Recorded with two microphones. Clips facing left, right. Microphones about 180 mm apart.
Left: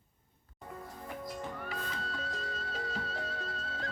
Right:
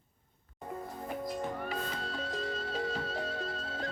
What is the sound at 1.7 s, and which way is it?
Music, 25° right (ahead or behind).